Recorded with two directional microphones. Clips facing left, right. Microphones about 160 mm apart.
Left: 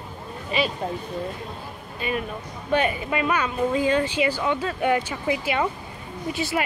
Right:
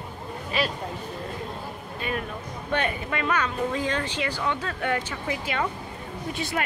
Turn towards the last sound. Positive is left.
turn(degrees=5)  # may be behind; listen again after turning